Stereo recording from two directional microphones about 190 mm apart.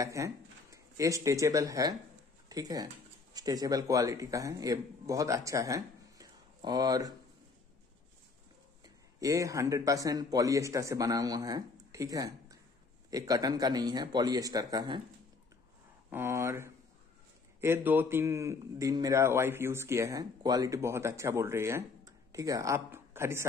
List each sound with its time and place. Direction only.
0.0 s a man's voice: 15° right (ahead or behind)
8.8 s a man's voice: 15° right (ahead or behind)
16.1 s a man's voice: 15° right (ahead or behind)